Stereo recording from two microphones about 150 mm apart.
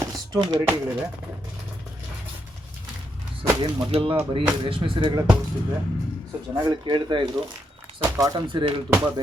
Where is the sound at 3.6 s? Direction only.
40° right (ahead or behind).